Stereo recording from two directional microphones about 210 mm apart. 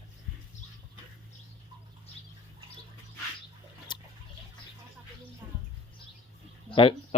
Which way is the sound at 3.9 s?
20° left (ahead or behind).